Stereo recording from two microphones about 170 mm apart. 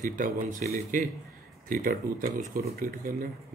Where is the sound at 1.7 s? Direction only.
55° right (ahead or behind).